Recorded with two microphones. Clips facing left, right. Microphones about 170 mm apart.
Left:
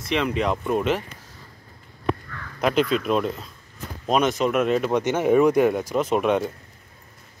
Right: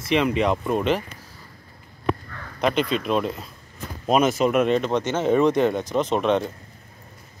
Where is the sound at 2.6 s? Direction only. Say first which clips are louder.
Left 1 dB; centre (ahead or behind).